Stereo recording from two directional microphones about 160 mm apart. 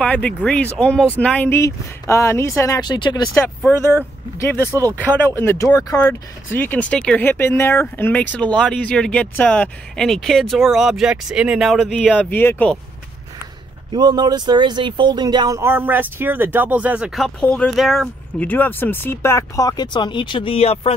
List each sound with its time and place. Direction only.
0.0 s speech: 10° left (ahead or behind); by 3.3 s 25° left (ahead or behind)
3.4 s speech: 15° left (ahead or behind)
13.9 s speech: 25° right (ahead or behind); by 18.1 s centre (ahead or behind)
18.4 s speech: 10° left (ahead or behind); by 20.9 s 40° left (ahead or behind)